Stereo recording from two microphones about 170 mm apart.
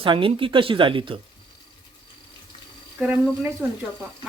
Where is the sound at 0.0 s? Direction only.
30° right (ahead or behind).